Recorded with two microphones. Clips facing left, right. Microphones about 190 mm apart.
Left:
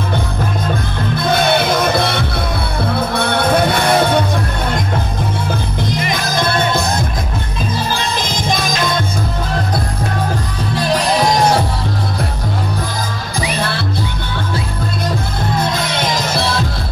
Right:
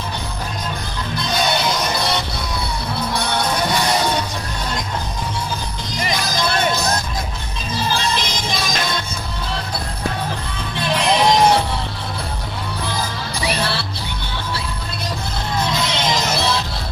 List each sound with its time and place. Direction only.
1.1 s music: 55° left (ahead or behind)
6.1 s music: 55° left (ahead or behind)
8.2 s music: 50° left (ahead or behind)
10.8 s music: 40° left (ahead or behind)
13.6 s music: 50° left (ahead or behind)
15.7 s music: 50° left (ahead or behind)